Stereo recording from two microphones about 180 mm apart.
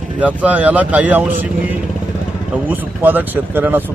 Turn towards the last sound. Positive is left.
turn(degrees=-10)  # may be behind; listen again after turning